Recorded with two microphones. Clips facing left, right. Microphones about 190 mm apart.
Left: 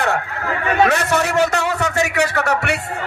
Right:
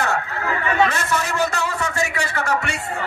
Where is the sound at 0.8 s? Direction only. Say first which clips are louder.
Left 5 dB; 70° left (ahead or behind).